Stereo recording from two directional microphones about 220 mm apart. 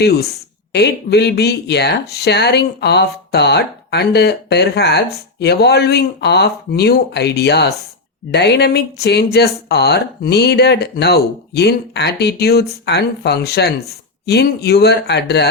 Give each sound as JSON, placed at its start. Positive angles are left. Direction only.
{"t": 0.7, "sound": "speech", "side_deg": 50}